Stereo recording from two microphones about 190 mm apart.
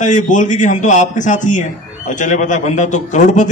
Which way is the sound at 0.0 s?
40° left (ahead or behind).